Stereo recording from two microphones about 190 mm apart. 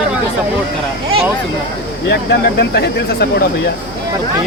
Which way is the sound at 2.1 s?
60° left (ahead or behind).